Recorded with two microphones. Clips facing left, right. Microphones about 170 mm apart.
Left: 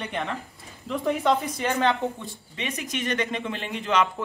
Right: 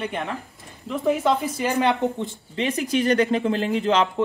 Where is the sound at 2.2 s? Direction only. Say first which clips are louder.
Right 9 dB; 35° right (ahead or behind).